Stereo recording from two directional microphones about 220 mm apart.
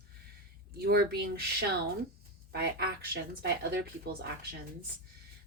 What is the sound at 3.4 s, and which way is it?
Speech, 45° right (ahead or behind).